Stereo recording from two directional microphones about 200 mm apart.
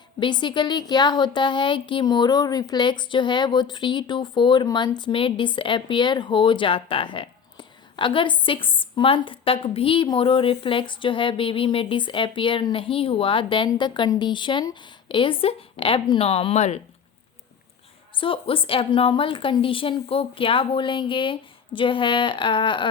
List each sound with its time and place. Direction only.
0.2 s speech: 25° left (ahead or behind)
18.1 s speech: 25° left (ahead or behind)